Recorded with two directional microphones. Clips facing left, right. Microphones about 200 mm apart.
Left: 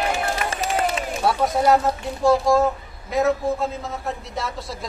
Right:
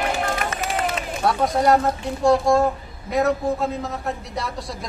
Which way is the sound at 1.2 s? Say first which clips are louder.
Right 1 dB; 5° left (ahead or behind).